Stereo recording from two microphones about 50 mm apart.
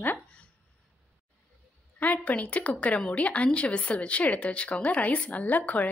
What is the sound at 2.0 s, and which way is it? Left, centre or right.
A woman's voice, left.